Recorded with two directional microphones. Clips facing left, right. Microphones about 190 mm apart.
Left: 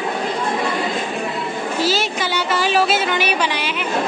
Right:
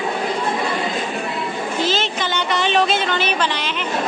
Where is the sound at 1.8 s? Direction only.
10° left (ahead or behind).